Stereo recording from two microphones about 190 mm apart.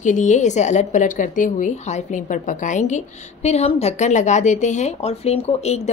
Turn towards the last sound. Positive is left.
turn(degrees=35)  # may be behind; listen again after turning